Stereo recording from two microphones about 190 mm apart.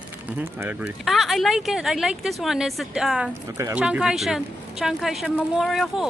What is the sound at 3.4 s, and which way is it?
Speech, 15° right (ahead or behind).